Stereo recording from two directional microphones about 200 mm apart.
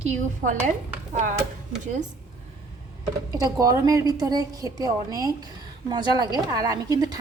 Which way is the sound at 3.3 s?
20° right (ahead or behind).